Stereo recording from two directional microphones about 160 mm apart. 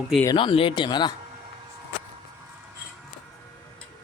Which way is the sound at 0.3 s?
35° left (ahead or behind).